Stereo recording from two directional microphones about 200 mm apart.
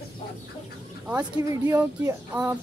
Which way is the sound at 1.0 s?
15° right (ahead or behind).